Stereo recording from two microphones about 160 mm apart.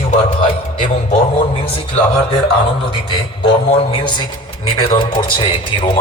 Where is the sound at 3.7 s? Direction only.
35° left (ahead or behind).